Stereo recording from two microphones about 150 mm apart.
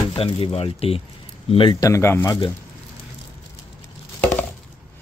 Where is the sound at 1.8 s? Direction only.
20° left (ahead or behind).